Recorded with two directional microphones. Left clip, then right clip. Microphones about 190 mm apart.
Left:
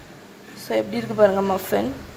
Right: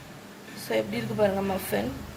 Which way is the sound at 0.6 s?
25° left (ahead or behind).